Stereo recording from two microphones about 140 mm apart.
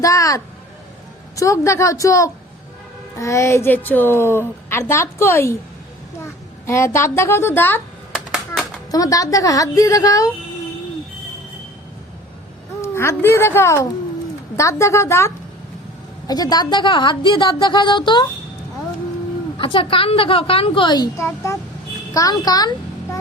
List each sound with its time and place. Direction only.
0.0 s a woman's voice: 25° left (ahead or behind)
6.7 s speech: 20° left (ahead or behind)
12.8 s a woman's voice: 20° left (ahead or behind); by 18.3 s 35° left (ahead or behind)
19.5 s a woman's voice: 40° left (ahead or behind)